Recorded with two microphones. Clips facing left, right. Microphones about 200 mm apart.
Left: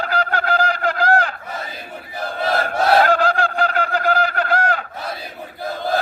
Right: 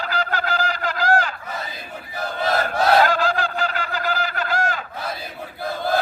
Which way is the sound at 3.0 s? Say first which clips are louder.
Left 3 dB; 60° left (ahead or behind).